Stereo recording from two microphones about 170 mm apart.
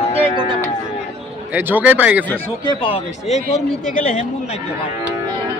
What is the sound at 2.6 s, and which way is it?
Speech, 25° left (ahead or behind).